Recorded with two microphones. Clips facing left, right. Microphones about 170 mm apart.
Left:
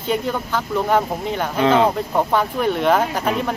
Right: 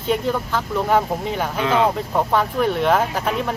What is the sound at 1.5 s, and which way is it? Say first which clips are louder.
Speech: left 4 dB; 35° left (ahead or behind).